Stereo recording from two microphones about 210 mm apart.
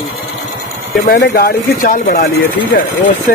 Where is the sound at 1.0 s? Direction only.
45° left (ahead or behind).